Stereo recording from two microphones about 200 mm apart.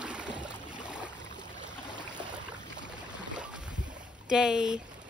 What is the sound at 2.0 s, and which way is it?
Boat, 20° right (ahead or behind).